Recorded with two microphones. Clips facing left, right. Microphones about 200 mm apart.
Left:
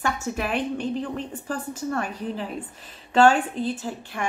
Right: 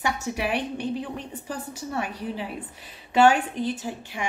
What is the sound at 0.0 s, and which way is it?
Speech, 15° right (ahead or behind).